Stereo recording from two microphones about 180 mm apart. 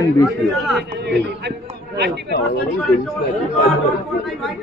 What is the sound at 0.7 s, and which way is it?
Speech, 65° right (ahead or behind).